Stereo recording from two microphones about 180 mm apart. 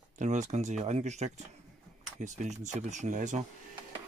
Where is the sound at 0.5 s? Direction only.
40° right (ahead or behind).